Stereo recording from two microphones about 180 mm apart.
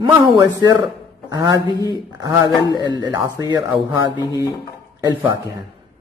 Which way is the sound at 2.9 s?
25° right (ahead or behind).